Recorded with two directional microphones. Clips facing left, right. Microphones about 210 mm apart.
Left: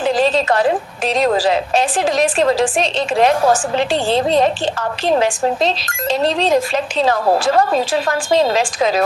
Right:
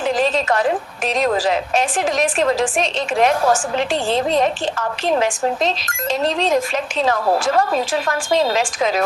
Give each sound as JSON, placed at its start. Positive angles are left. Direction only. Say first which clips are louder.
{"t": 0.0, "sound": "a woman's voice", "louder": "left 3 dB", "side_deg": 30}